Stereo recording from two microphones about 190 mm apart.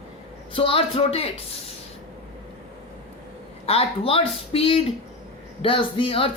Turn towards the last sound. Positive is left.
turn(degrees=30)  # may be behind; listen again after turning